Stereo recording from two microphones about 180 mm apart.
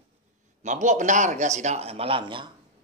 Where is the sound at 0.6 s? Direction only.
40° right (ahead or behind); by 2.5 s 25° right (ahead or behind).